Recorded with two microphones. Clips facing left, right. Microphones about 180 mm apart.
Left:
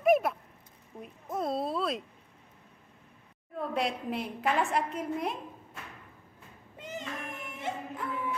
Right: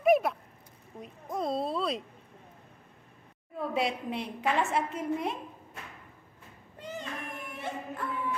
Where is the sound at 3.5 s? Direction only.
Centre (ahead or behind).